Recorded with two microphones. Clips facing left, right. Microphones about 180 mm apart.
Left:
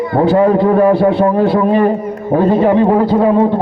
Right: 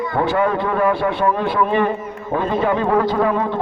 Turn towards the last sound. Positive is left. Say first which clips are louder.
# left 8 dB
turn(degrees=30)  # may be behind; listen again after turning